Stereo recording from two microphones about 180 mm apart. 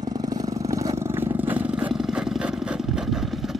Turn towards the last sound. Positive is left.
turn(degrees=0)  # may be behind; listen again after turning